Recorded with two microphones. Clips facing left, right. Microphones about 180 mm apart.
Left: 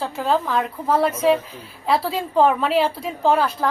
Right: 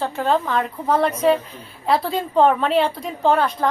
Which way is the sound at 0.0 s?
5° left (ahead or behind).